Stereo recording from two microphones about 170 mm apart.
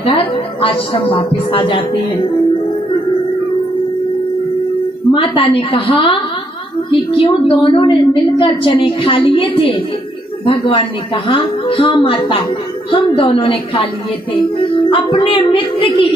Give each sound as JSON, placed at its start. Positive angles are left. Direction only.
{"t": 0.0, "sound": "a woman's voice", "side_deg": 30}
{"t": 5.1, "sound": "a woman's voice", "side_deg": 30}